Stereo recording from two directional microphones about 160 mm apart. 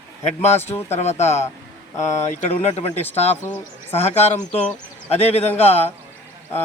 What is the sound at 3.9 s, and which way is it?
A man's voice, 40° left (ahead or behind).